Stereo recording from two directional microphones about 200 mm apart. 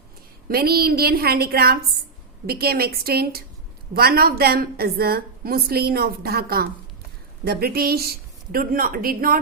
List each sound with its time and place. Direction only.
0.4 s a woman's voice: 50° right (ahead or behind)